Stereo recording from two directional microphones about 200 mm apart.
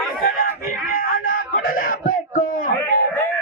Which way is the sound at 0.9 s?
45° left (ahead or behind).